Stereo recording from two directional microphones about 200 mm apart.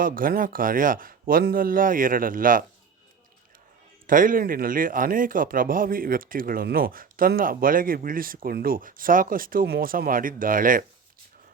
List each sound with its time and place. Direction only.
0.0 s speech: 45° right (ahead or behind)
4.0 s speech: 40° right (ahead or behind)